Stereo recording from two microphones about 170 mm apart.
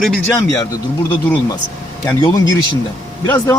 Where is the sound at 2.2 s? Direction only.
20° left (ahead or behind).